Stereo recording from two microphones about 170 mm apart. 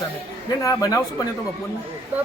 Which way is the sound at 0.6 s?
20° left (ahead or behind).